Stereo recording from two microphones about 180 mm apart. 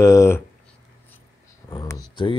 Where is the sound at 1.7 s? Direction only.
20° left (ahead or behind).